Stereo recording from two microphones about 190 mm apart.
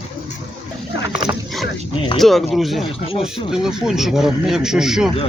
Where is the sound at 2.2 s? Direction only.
Centre (ahead or behind).